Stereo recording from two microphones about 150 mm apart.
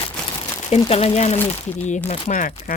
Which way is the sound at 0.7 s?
45° left (ahead or behind).